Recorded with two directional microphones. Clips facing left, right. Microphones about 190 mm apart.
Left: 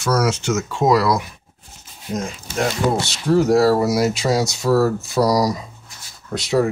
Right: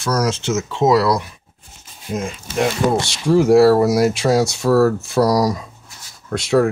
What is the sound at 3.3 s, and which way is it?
Speech, 5° right (ahead or behind).